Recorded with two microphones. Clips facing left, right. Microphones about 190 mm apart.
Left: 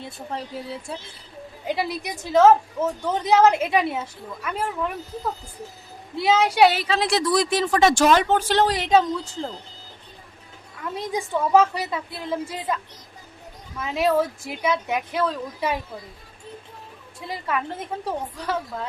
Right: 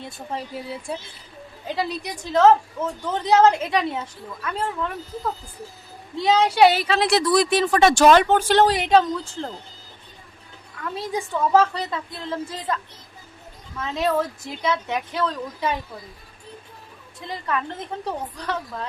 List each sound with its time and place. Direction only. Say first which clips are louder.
0.0 s speech: right 1 dB; 10° right (ahead or behind)
1.6 s a woman's voice: left 1 dB; 15° left (ahead or behind)
6.1 s a woman's voice: right 1 dB; 10° left (ahead or behind)
6.8 s speech: right 2 dB; 65° right (ahead or behind)
8.9 s a woman's voice: right 1 dB; centre (ahead or behind)
10.8 s a woman's voice: even; 20° left (ahead or behind)
17.2 s a woman's voice: even; 10° left (ahead or behind)